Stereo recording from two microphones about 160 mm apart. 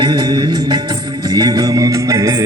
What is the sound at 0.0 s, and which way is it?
Music, 25° right (ahead or behind).